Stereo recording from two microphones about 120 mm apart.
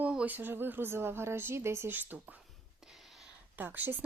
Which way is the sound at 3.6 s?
15° right (ahead or behind).